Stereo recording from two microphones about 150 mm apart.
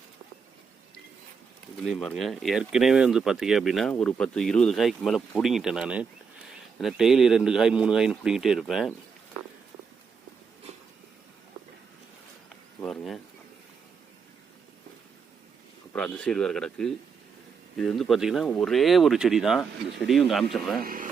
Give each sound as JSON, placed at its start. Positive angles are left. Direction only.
{"t": 1.8, "sound": "speech", "side_deg": 0}
{"t": 12.8, "sound": "a sound", "side_deg": 5}
{"t": 16.0, "sound": "speech", "side_deg": 10}
{"t": 20.8, "sound": "speech", "side_deg": -70}